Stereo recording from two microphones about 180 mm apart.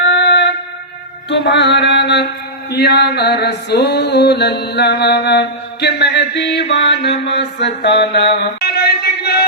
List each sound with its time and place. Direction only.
0.0 s music: 75° left (ahead or behind)
7.9 s mantra: 70° left (ahead or behind)